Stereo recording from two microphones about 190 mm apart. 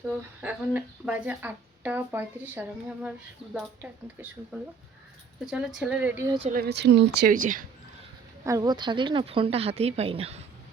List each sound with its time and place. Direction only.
0.1 s speech: 10° right (ahead or behind)
5.5 s speech: 5° right (ahead or behind)
6.5 s speech: 55° right (ahead or behind)
8.4 s speech: 20° right (ahead or behind)